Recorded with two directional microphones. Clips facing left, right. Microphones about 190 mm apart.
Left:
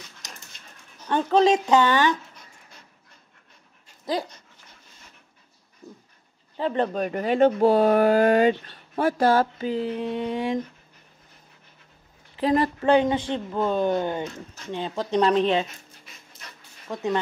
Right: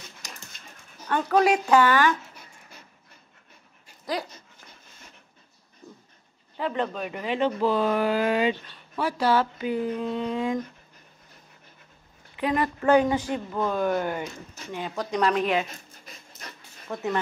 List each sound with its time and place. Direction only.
1.1 s speech: 25° left (ahead or behind)
4.0 s dog: 25° left (ahead or behind)
6.5 s speech: 30° left (ahead or behind)
9.8 s speech: 20° left (ahead or behind)
12.4 s speech: 35° left (ahead or behind)
16.1 s dog: 40° right (ahead or behind)
16.9 s speech: 15° left (ahead or behind)